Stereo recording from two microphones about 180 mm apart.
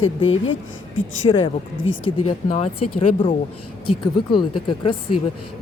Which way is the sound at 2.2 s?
35° left (ahead or behind).